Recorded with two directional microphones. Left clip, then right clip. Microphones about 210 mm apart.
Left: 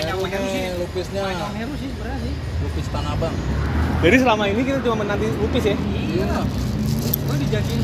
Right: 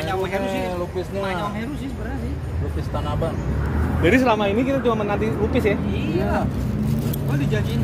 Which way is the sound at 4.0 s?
10° left (ahead or behind).